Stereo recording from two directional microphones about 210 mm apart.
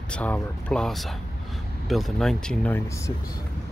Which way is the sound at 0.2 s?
5° left (ahead or behind).